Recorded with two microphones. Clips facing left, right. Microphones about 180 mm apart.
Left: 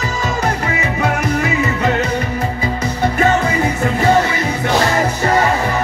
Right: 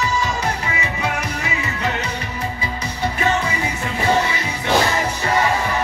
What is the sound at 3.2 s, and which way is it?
Music, 50° left (ahead or behind).